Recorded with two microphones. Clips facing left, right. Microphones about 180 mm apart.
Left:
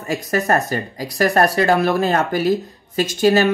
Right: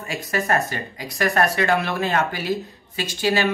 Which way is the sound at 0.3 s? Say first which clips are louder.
Left 4 dB; 40° left (ahead or behind).